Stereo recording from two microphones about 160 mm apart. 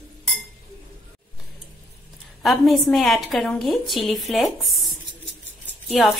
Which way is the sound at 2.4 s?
Centre (ahead or behind).